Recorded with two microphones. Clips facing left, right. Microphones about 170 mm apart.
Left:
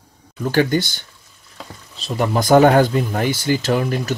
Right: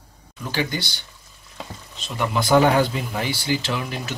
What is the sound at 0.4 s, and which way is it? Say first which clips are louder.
Speech: left 9 dB; 50° left (ahead or behind).